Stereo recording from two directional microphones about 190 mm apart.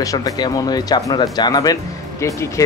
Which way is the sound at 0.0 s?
20° left (ahead or behind).